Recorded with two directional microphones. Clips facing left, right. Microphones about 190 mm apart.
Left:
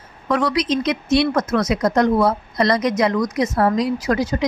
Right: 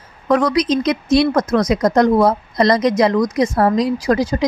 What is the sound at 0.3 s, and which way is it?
A woman's voice, 45° right (ahead or behind).